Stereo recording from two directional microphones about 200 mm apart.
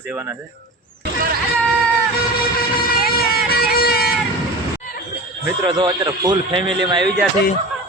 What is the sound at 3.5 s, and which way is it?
Music, 50° left (ahead or behind).